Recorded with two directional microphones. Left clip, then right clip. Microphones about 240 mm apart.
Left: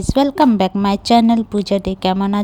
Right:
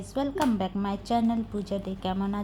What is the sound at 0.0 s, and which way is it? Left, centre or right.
A woman's voice, left.